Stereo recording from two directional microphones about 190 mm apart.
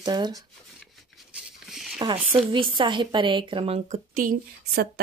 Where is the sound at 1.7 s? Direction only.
Centre (ahead or behind).